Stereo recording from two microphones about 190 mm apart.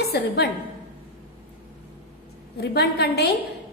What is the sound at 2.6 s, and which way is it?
Speech, 60° left (ahead or behind).